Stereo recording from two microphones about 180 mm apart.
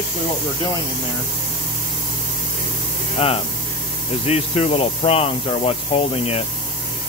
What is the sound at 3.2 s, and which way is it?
Speech, 35° left (ahead or behind).